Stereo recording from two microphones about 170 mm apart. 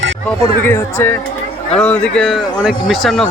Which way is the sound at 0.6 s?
15° left (ahead or behind).